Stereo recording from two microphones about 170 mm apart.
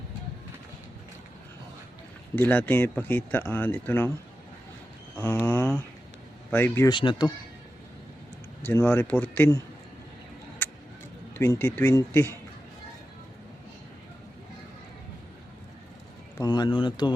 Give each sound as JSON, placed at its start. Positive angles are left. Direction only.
{"t": 2.3, "sound": "speech", "side_deg": 10}
{"t": 5.1, "sound": "speech", "side_deg": 10}
{"t": 6.8, "sound": "speech", "side_deg": 30}
{"t": 8.6, "sound": "speech", "side_deg": 15}
{"t": 11.3, "sound": "speech", "side_deg": 10}
{"t": 16.4, "sound": "speech", "side_deg": 25}